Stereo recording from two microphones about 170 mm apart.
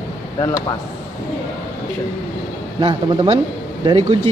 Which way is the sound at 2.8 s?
25° right (ahead or behind).